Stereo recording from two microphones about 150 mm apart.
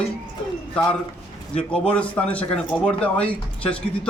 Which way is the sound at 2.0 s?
10° left (ahead or behind).